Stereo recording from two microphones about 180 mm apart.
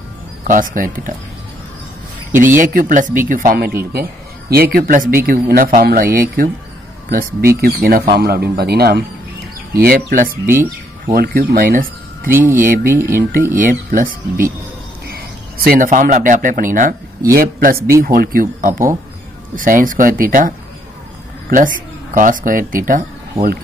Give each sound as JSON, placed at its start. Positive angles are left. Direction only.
{"t": 0.5, "sound": "speech", "side_deg": -50}
{"t": 2.6, "sound": "speech", "side_deg": -45}
{"t": 12.4, "sound": "speech", "side_deg": -15}
{"t": 12.6, "sound": "speech", "side_deg": -50}
{"t": 12.9, "sound": "speech", "side_deg": -15}
{"t": 13.5, "sound": "speech", "side_deg": -50}